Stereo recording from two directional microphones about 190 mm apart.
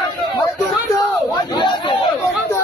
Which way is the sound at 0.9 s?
20° left (ahead or behind).